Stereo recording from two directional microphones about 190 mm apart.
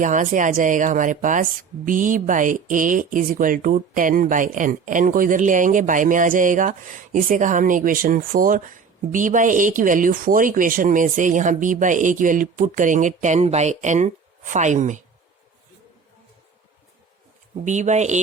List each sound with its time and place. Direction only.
0.0 s speech: 40° right (ahead or behind)
17.7 s speech: 40° right (ahead or behind)